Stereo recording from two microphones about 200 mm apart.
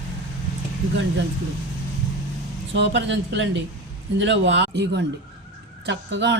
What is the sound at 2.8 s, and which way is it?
Speech, 65° right (ahead or behind).